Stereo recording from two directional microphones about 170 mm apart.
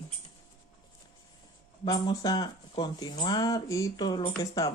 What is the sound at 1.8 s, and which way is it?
Speech, 25° left (ahead or behind).